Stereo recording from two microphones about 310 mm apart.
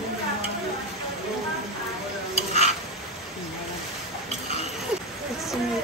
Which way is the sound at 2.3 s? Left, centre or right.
Left.